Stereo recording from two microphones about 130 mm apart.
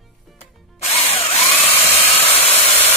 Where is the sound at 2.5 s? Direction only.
15° left (ahead or behind).